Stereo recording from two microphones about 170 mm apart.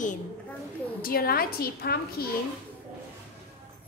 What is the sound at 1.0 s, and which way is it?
A woman's voice, 60° left (ahead or behind).